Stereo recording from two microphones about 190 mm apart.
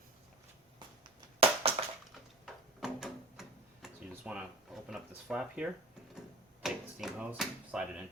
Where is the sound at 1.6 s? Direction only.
30° right (ahead or behind).